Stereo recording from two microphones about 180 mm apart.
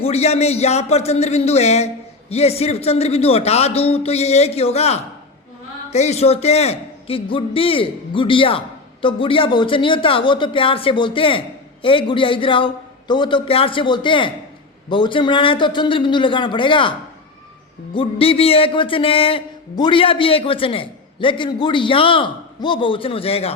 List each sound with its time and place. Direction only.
0.0 s a man's voice: 35° left (ahead or behind)
17.9 s a man's voice: 30° left (ahead or behind)